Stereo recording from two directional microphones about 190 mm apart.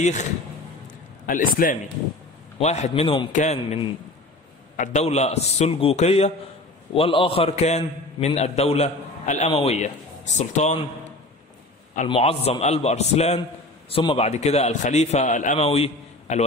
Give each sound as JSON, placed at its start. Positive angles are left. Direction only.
{"t": 0.0, "sound": "a man's voice", "side_deg": 40}
{"t": 2.6, "sound": "a man's voice", "side_deg": 35}
{"t": 12.1, "sound": "a man's voice", "side_deg": 30}